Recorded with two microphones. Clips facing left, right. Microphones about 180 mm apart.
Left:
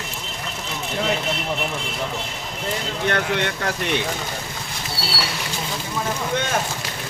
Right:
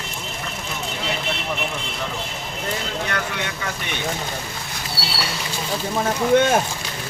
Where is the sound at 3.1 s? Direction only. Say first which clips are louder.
Left 5 dB; 65° left (ahead or behind).